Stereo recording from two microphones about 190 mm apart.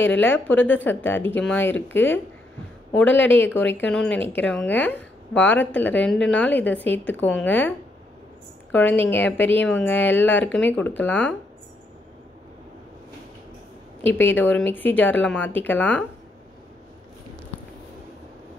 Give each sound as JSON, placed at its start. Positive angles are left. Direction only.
{"t": 0.0, "sound": "speech", "side_deg": 10}
{"t": 8.7, "sound": "speech", "side_deg": 10}
{"t": 14.0, "sound": "speech", "side_deg": 10}